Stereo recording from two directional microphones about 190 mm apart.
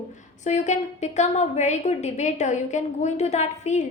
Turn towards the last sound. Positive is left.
turn(degrees=35)  # may be behind; listen again after turning